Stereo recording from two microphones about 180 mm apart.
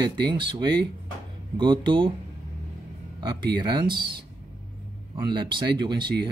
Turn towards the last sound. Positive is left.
turn(degrees=-25)  # may be behind; listen again after turning